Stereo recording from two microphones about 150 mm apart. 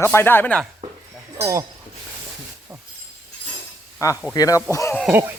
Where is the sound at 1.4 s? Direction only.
20° right (ahead or behind).